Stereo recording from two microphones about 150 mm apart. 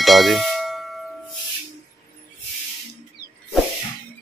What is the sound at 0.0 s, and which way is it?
Clang, centre (ahead or behind).